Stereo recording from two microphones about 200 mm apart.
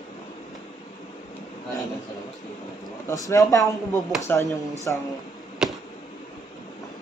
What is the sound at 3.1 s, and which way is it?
Speech, 15° left (ahead or behind).